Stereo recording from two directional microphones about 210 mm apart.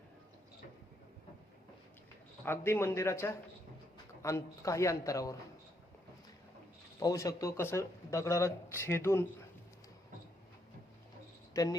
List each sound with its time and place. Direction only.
2.4 s speech: 10° left (ahead or behind)
7.0 s speech: 15° left (ahead or behind)
11.5 s speech: 15° left (ahead or behind)